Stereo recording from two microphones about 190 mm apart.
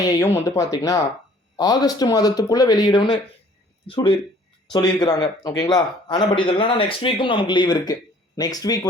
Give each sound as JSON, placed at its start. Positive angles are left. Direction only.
{"t": 0.0, "sound": "a man's voice", "side_deg": 15}